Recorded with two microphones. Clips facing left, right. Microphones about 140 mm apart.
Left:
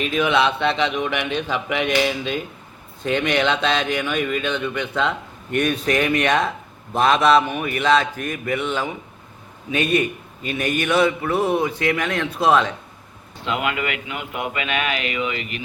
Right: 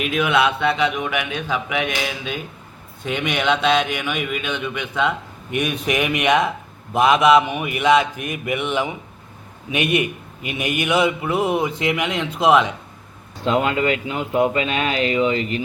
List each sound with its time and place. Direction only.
0.0 s a man's voice: 5° right (ahead or behind)
13.4 s speech: 35° right (ahead or behind)